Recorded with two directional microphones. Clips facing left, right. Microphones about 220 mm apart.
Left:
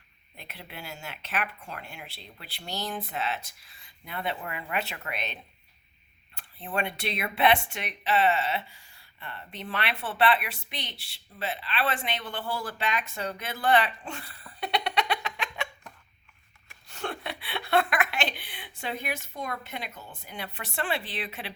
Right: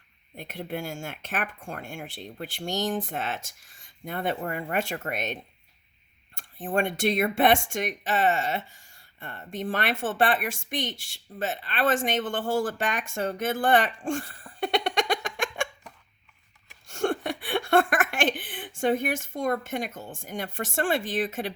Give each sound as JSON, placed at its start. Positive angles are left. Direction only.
{"t": 0.3, "sound": "speech", "side_deg": -45}
{"t": 6.6, "sound": "speech", "side_deg": -45}
{"t": 16.8, "sound": "speech", "side_deg": -45}